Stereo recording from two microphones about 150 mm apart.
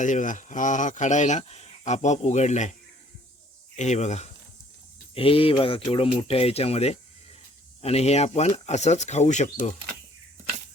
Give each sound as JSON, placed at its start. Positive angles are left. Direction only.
{"t": 0.0, "sound": "speech", "side_deg": 55}
{"t": 3.8, "sound": "speech", "side_deg": 50}
{"t": 5.1, "sound": "speech", "side_deg": 40}